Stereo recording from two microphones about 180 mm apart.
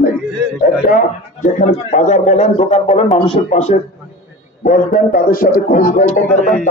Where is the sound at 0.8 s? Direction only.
50° left (ahead or behind).